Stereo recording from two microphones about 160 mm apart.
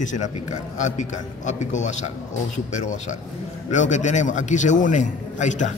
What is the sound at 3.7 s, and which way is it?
A man's voice, 50° left (ahead or behind).